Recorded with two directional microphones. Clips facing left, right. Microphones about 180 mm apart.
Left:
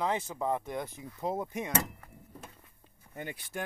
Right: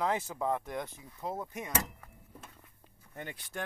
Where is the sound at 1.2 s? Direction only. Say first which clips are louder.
Left 4 dB; 15° left (ahead or behind).